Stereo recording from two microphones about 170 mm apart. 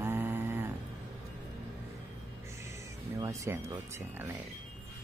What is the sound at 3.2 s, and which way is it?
Speech, 20° right (ahead or behind).